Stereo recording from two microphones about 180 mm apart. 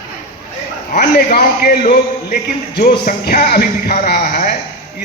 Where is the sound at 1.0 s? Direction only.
55° left (ahead or behind).